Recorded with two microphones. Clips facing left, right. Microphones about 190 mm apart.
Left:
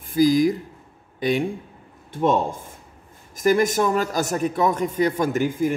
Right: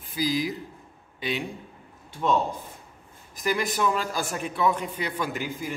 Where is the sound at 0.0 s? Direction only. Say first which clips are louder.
Left 10 dB; 50° left (ahead or behind).